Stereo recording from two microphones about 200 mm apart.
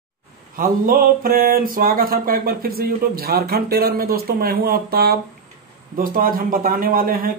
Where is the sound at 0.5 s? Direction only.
45° right (ahead or behind).